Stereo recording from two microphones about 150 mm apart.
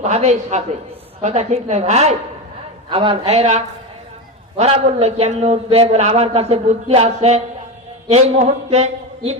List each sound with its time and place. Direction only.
0.0 s a man's voice: 50° right (ahead or behind)